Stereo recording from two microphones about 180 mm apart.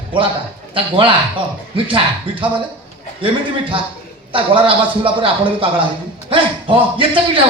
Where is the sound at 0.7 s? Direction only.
30° right (ahead or behind).